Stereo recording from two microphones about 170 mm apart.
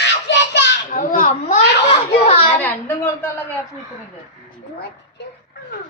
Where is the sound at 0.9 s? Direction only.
50° left (ahead or behind).